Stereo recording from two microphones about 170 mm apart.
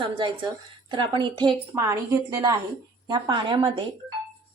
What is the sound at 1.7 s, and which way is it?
A woman's voice, 15° right (ahead or behind).